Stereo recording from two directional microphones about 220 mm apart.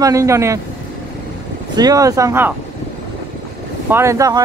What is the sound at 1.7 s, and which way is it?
Speech, 15° right (ahead or behind).